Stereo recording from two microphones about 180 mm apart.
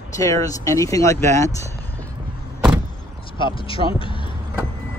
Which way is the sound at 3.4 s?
30° left (ahead or behind).